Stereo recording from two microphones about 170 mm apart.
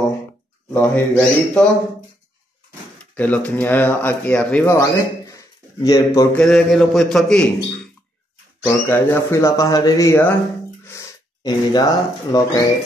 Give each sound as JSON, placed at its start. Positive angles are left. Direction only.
{"t": 0.7, "sound": "speech", "side_deg": 10}
{"t": 3.2, "sound": "speech", "side_deg": 10}
{"t": 4.6, "sound": "speech", "side_deg": 20}
{"t": 6.3, "sound": "a man's voice", "side_deg": 5}
{"t": 8.6, "sound": "speech", "side_deg": 15}